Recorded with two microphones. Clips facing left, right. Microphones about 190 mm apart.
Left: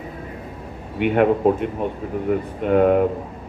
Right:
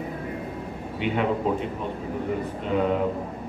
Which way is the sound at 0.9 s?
55° left (ahead or behind).